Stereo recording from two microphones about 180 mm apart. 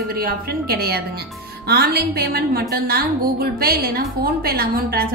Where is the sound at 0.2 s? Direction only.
55° right (ahead or behind).